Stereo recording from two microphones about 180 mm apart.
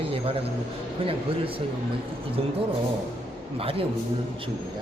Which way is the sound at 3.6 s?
30° right (ahead or behind).